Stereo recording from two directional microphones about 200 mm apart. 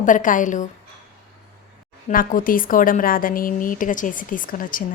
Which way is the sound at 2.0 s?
45° left (ahead or behind).